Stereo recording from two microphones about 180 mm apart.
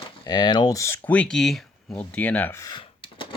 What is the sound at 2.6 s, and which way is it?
Computer keyboard, 25° left (ahead or behind).